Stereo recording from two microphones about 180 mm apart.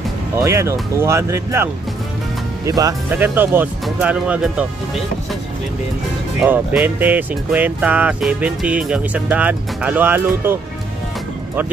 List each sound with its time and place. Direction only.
0.4 s speech: 15° right (ahead or behind)
6.4 s speech: 5° right (ahead or behind)